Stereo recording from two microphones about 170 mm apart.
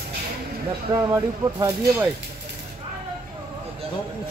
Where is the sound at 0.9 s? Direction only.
25° right (ahead or behind).